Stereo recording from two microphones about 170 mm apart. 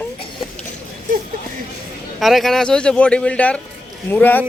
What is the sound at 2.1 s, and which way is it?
Speech, centre (ahead or behind).